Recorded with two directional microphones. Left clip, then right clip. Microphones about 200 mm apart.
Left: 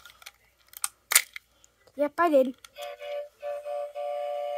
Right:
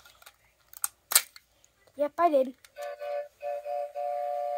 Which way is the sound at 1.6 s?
45° left (ahead or behind).